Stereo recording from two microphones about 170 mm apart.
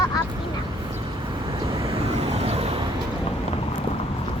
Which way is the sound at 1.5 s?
30° right (ahead or behind).